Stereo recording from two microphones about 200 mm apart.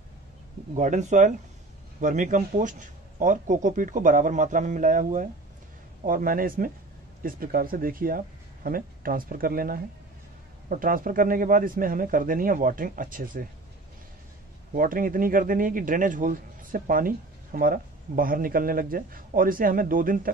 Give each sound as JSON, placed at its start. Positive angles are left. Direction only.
{"t": 0.7, "sound": "a man's voice", "side_deg": -40}
{"t": 14.7, "sound": "a man's voice", "side_deg": -45}